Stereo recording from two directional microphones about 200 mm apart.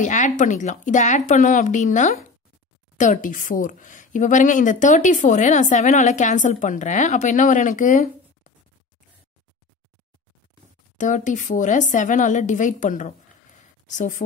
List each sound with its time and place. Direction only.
0.0 s speech: 35° left (ahead or behind)
11.0 s speech: 40° left (ahead or behind)